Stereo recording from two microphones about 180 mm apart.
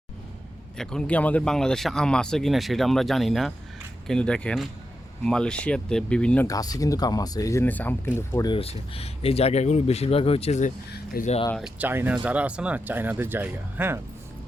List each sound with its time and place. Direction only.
0.8 s speech: 5° left (ahead or behind)
6.5 s speech: 20° left (ahead or behind)
8.4 s speech: 30° left (ahead or behind)
10.9 s speech: 55° left (ahead or behind)
11.5 s speech: 5° right (ahead or behind)